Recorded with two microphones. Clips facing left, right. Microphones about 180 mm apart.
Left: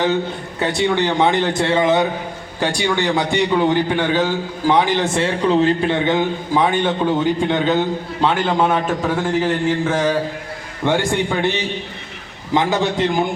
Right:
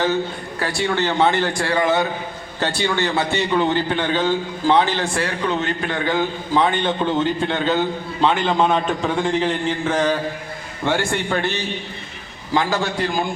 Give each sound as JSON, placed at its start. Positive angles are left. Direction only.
{"t": 0.6, "sound": "a man's voice", "side_deg": 20}